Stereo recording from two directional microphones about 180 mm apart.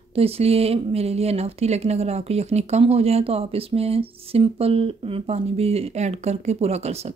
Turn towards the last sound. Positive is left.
turn(degrees=-35)  # may be behind; listen again after turning